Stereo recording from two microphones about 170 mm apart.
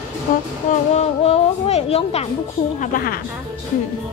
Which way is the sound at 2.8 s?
55° left (ahead or behind).